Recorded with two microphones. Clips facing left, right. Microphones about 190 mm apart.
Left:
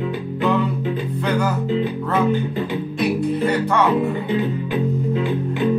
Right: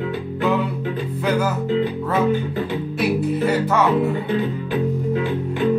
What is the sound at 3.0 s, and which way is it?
Music, 5° right (ahead or behind).